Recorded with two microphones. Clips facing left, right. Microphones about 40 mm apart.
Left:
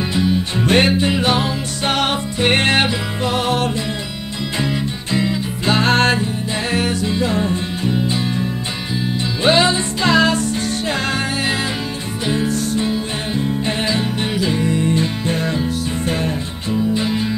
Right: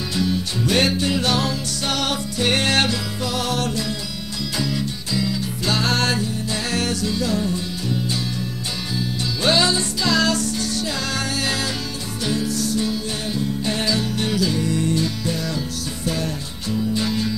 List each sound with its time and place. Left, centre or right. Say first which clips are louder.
0.1 s music: left 2 dB; left
12.3 s music: left 3 dB; left
16.7 s music: left 4 dB; left